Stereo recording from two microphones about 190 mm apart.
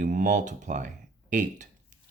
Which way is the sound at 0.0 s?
45° right (ahead or behind).